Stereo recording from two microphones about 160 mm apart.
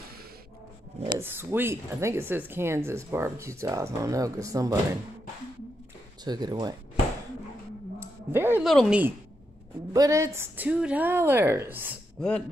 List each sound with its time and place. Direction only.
1.2 s speech: 15° right (ahead or behind)
6.2 s speech: 25° right (ahead or behind)
8.0 s a sound: 15° right (ahead or behind)
8.6 s speech: centre (ahead or behind)
9.9 s speech: 20° right (ahead or behind)
12.2 s speech: 5° left (ahead or behind)